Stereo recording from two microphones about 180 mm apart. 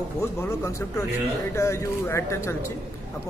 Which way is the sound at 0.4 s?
15° left (ahead or behind).